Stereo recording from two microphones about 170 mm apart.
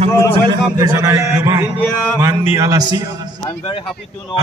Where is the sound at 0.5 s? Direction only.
25° right (ahead or behind).